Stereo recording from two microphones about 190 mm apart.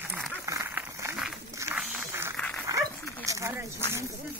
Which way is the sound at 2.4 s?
5° left (ahead or behind).